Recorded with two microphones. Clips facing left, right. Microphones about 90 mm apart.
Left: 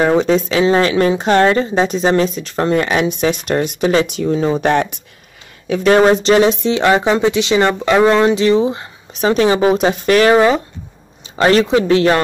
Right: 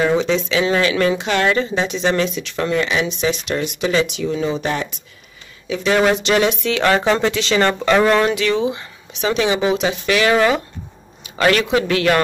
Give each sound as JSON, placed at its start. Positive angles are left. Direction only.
{"t": 0.0, "sound": "speech", "side_deg": 45}
{"t": 5.9, "sound": "speech", "side_deg": 35}
{"t": 8.4, "sound": "speech", "side_deg": 30}
{"t": 10.3, "sound": "a man's voice", "side_deg": 30}